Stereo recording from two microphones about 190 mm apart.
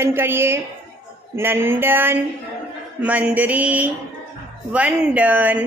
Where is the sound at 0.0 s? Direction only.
10° right (ahead or behind).